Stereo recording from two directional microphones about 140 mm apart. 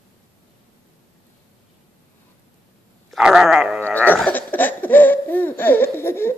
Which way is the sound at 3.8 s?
15° right (ahead or behind).